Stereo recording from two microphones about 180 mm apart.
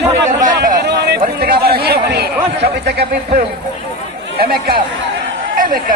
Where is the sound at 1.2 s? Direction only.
55° right (ahead or behind).